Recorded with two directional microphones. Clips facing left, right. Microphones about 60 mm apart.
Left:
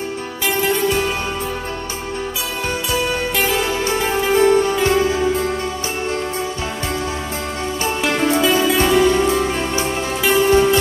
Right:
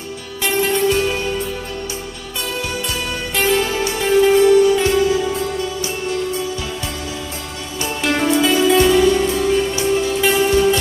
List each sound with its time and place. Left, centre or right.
3.3 s music: centre
3.9 s music: left
8.5 s music: left